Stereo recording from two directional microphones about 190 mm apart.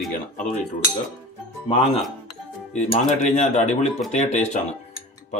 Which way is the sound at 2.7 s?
40° left (ahead or behind).